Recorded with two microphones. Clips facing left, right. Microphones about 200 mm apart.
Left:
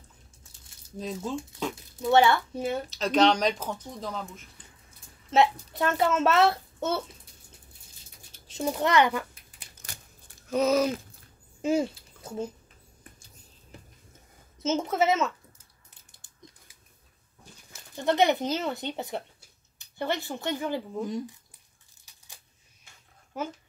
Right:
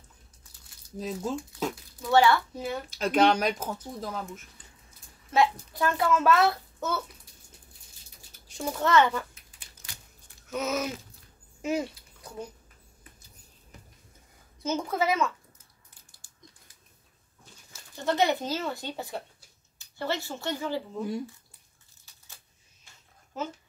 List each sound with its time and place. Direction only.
0.9 s speech: 5° right (ahead or behind)
2.0 s a child's voice: 20° left (ahead or behind)
2.9 s speech: 10° right (ahead or behind)
5.3 s a child's voice: 25° left (ahead or behind)
8.5 s a child's voice: 20° left (ahead or behind)
10.4 s speech: 30° left (ahead or behind)
14.6 s a child's voice: 25° left (ahead or behind)
15.9 s a sound: 20° left (ahead or behind)
18.0 s a child's voice: 20° left (ahead or behind)
22.1 s coin: 15° left (ahead or behind)
23.3 s speech: 10° left (ahead or behind)